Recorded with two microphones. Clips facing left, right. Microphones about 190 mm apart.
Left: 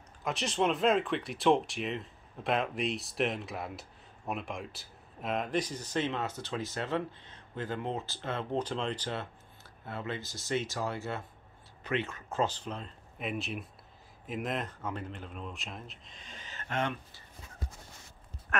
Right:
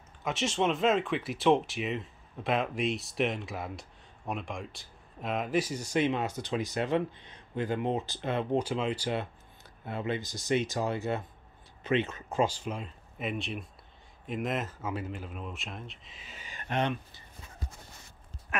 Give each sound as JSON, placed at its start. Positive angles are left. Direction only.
{"t": 0.2, "sound": "speech", "side_deg": 0}
{"t": 18.5, "sound": "a woman's voice", "side_deg": -10}